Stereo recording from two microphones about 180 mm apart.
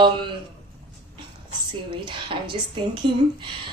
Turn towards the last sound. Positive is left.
turn(degrees=-30)  # may be behind; listen again after turning